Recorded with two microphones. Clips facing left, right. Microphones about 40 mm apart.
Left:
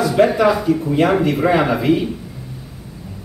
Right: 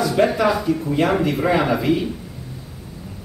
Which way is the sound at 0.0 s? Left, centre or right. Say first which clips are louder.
Left 3 dB; centre.